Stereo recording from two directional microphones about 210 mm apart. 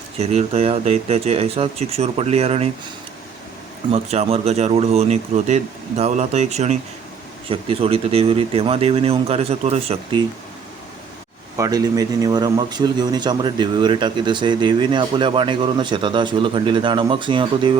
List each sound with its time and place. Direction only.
0.2 s speech: 30° right (ahead or behind)
3.9 s speech: 30° right (ahead or behind)
11.5 s speech: 15° right (ahead or behind)